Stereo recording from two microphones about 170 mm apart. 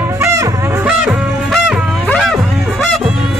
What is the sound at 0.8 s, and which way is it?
Music, 5° right (ahead or behind).